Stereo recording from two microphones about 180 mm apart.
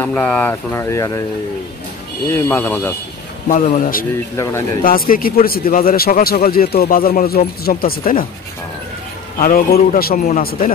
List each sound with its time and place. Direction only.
0.0 s speech: 10° left (ahead or behind)
2.2 s speech: 15° left (ahead or behind)
3.4 s a man's voice: 45° left (ahead or behind)
9.4 s a man's voice: 55° left (ahead or behind)